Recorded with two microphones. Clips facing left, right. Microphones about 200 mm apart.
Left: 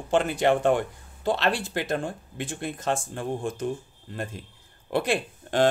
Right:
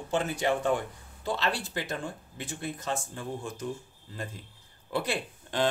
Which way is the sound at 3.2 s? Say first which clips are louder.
Left 6 dB; 75° left (ahead or behind).